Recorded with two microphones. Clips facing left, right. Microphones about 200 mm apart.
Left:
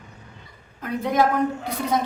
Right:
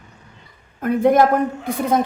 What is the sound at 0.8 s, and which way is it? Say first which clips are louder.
A woman's voice: right 7 dB; 50° right (ahead or behind).